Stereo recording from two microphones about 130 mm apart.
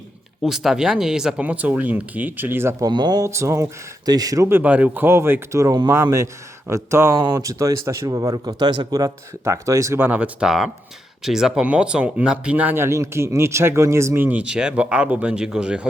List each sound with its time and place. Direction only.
0.4 s speech: 5° right (ahead or behind)
2.8 s speech: 35° right (ahead or behind); by 15.9 s 5° right (ahead or behind)